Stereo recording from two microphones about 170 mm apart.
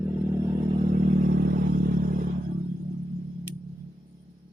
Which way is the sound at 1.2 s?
70° right (ahead or behind).